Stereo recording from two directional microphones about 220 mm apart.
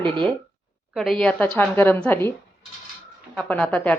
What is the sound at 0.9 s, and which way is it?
A woman's voice, centre (ahead or behind).